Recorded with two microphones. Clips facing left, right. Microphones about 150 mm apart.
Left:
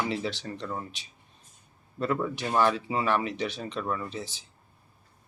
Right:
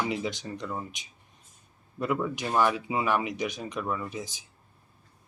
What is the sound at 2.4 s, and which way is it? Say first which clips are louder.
Speech: left 1 dB; 10° right (ahead or behind).